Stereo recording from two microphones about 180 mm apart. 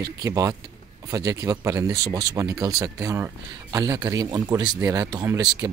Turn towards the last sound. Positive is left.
turn(degrees=-20)  # may be behind; listen again after turning